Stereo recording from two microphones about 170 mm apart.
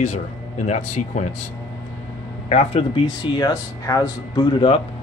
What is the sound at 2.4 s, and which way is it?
Speech, 40° left (ahead or behind).